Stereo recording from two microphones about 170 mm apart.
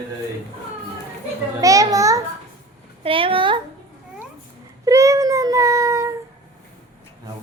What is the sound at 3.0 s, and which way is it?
Speech, 30° right (ahead or behind).